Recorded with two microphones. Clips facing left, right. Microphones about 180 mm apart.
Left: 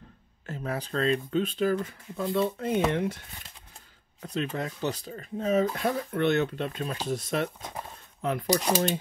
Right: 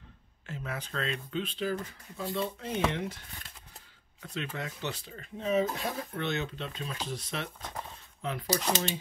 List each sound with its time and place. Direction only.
0.5 s speech: 40° left (ahead or behind); by 3.2 s 55° left (ahead or behind)
4.2 s speech: 35° left (ahead or behind)
8.5 s speech: 15° left (ahead or behind)